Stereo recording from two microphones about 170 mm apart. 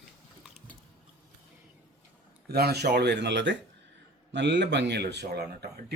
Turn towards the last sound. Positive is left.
turn(degrees=-70)  # may be behind; listen again after turning